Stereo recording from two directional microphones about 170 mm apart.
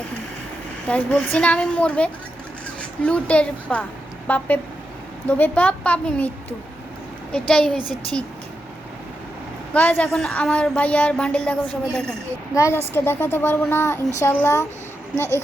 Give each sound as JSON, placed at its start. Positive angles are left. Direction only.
{"t": 0.9, "sound": "a woman's voice", "side_deg": 10}
{"t": 7.3, "sound": "a woman's voice", "side_deg": 5}
{"t": 9.7, "sound": "a woman's voice", "side_deg": 10}